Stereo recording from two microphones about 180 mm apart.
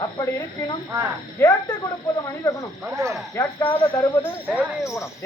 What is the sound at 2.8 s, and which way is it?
Speech, 15° right (ahead or behind).